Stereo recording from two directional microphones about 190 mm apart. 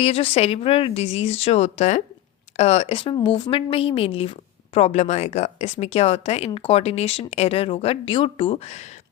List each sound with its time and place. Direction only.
0.0 s speech: 30° left (ahead or behind)